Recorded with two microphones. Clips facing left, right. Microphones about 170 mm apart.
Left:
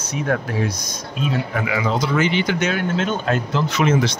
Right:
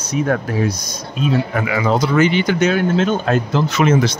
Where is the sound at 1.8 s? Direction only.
40° right (ahead or behind).